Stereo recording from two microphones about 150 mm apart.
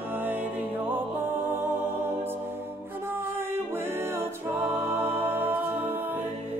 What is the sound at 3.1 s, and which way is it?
Music, 15° right (ahead or behind).